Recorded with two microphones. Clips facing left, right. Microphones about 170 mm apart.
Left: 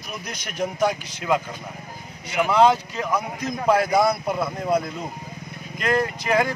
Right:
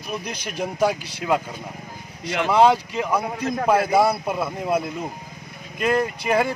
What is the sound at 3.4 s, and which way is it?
Speech, 55° right (ahead or behind).